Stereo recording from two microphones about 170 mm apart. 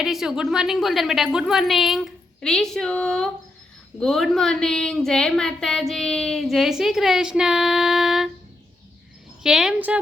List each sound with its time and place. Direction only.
0.0 s a woman's voice: centre (ahead or behind)
9.4 s a woman's voice: 5° right (ahead or behind)